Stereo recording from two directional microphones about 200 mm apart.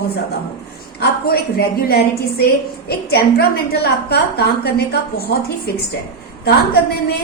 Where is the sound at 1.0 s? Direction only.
50° left (ahead or behind).